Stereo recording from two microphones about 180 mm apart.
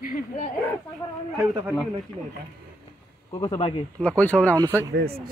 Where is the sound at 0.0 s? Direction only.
50° left (ahead or behind).